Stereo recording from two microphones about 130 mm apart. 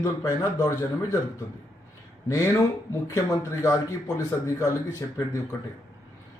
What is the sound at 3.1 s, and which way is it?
A man's voice, 20° left (ahead or behind).